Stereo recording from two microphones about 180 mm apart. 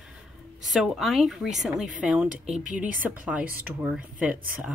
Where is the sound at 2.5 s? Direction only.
45° right (ahead or behind).